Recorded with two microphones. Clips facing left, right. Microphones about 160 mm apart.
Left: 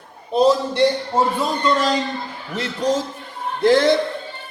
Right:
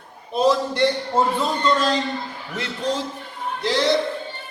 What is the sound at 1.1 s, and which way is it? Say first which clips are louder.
Speech: left 1 dB; 10° left (ahead or behind).